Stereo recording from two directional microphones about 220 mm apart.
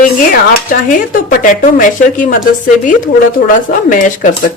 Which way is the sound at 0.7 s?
40° left (ahead or behind).